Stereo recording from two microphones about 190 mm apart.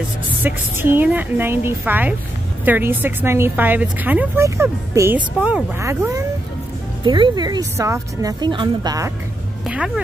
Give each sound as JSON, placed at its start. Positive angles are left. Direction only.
{"t": 0.4, "sound": "a woman's voice", "side_deg": -10}
{"t": 7.1, "sound": "a woman's voice", "side_deg": -25}
{"t": 9.7, "sound": "speech", "side_deg": -5}